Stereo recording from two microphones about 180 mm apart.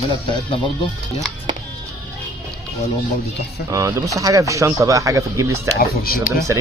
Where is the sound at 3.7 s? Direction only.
20° right (ahead or behind).